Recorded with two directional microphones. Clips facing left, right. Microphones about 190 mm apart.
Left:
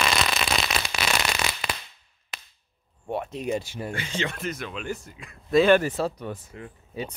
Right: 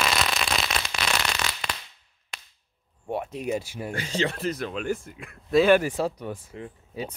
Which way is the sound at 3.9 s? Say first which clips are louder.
Right 5 dB; 40° right (ahead or behind).